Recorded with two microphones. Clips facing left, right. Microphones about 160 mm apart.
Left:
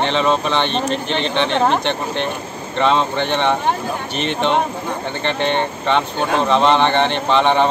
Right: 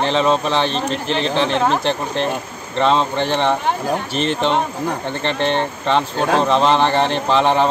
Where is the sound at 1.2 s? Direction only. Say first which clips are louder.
Right 2 dB; 35° right (ahead or behind).